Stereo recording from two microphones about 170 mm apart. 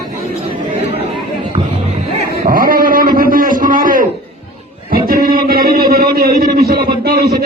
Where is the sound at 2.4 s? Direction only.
55° right (ahead or behind).